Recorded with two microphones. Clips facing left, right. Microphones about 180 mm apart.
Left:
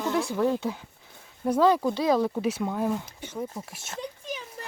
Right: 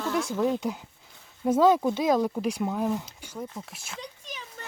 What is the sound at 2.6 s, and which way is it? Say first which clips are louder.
Speech: even; 10° right (ahead or behind).